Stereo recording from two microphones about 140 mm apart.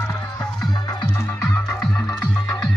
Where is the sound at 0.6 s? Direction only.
30° left (ahead or behind).